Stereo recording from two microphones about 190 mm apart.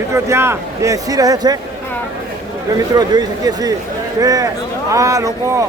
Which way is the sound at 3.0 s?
20° right (ahead or behind).